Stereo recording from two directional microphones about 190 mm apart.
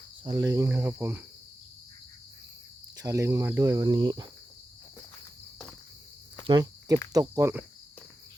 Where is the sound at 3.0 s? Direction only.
15° right (ahead or behind).